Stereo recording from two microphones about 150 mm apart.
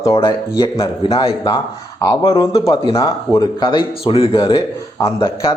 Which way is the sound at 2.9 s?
20° left (ahead or behind).